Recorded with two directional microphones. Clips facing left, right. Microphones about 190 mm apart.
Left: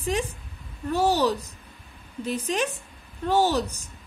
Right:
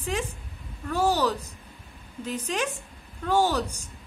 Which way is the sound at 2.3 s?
10° right (ahead or behind).